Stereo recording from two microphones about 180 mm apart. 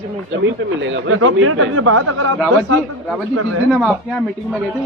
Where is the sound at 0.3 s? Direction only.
90° right.